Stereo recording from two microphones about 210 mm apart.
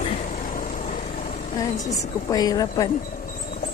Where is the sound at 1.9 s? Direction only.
20° left (ahead or behind).